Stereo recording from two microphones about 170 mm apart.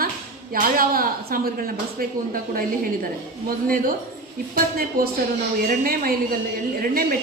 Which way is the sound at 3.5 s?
60° right (ahead or behind).